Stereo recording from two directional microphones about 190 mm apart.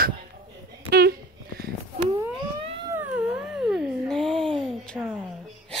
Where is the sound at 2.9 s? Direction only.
10° right (ahead or behind).